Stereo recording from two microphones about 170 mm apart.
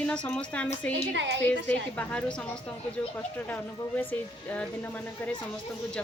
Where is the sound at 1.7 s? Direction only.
5° left (ahead or behind).